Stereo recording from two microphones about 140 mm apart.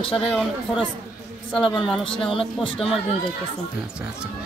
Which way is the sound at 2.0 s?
40° left (ahead or behind).